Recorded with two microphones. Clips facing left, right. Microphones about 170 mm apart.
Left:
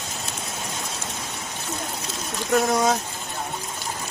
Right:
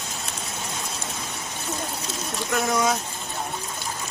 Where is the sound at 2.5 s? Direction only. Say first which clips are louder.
Left 3 dB; 35° left (ahead or behind).